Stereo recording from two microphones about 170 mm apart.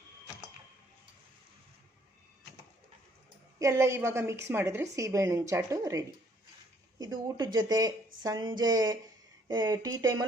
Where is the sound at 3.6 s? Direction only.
15° right (ahead or behind).